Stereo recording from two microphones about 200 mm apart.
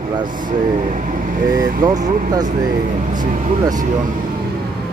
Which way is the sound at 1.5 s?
45° right (ahead or behind).